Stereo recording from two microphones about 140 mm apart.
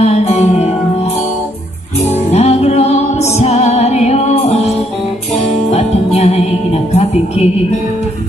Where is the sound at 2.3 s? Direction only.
50° left (ahead or behind).